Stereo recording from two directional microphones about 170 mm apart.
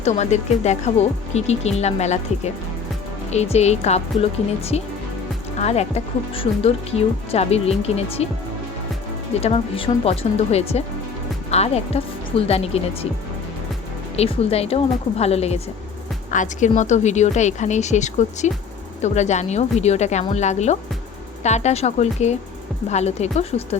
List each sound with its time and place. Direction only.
0.0 s speech: 40° left (ahead or behind)
9.4 s speech: 35° left (ahead or behind)
14.2 s speech: 35° left (ahead or behind)